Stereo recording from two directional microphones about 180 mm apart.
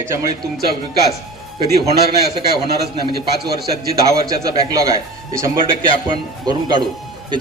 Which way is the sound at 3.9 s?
15° right (ahead or behind).